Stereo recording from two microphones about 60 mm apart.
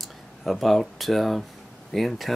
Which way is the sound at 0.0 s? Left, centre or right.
Centre.